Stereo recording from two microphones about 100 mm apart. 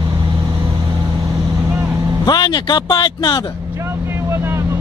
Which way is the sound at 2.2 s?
45° left (ahead or behind).